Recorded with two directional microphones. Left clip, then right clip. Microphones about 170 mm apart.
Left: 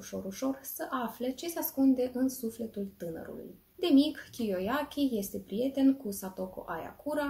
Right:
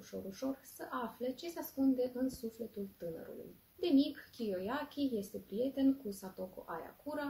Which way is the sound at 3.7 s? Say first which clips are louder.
Left 6 dB; 15° left (ahead or behind).